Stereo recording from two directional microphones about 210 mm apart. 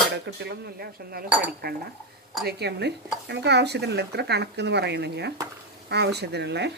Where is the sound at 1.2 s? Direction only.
5° right (ahead or behind).